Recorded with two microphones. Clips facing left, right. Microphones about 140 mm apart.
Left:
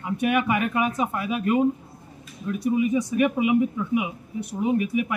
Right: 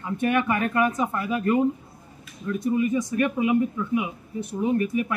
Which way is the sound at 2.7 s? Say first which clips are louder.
Left 1 dB; 15° left (ahead or behind).